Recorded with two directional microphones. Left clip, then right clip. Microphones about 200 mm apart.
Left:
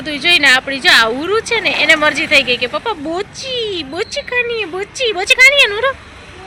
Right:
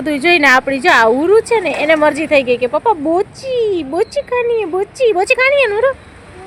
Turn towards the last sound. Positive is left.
turn(degrees=-20)  # may be behind; listen again after turning